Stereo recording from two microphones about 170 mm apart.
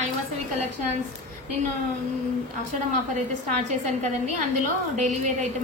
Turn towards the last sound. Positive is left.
turn(degrees=-45)  # may be behind; listen again after turning